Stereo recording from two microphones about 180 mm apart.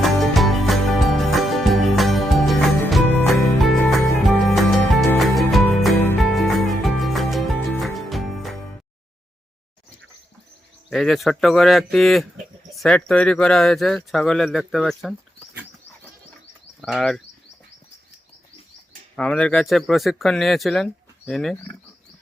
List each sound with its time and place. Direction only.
0.0 s music: centre (ahead or behind)
10.8 s speech: 5° left (ahead or behind)
16.8 s speech: centre (ahead or behind)
19.1 s speech: 5° left (ahead or behind)